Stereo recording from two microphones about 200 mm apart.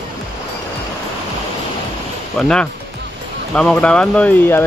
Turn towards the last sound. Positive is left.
turn(degrees=10)  # may be behind; listen again after turning